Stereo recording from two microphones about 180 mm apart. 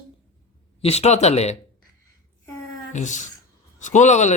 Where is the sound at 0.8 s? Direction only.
35° left (ahead or behind).